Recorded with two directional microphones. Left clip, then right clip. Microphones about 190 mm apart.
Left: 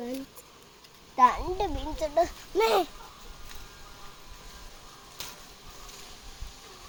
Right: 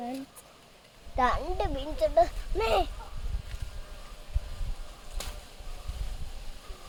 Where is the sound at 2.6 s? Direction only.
35° left (ahead or behind).